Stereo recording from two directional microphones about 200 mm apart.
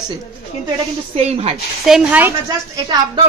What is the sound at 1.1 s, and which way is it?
Speech, 30° right (ahead or behind).